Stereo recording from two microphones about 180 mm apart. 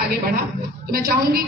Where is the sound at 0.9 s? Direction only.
55° right (ahead or behind).